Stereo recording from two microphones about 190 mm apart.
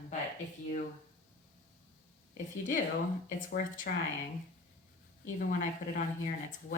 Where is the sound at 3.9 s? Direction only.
45° left (ahead or behind).